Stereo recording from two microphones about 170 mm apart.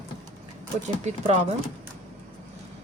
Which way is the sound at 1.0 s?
40° right (ahead or behind).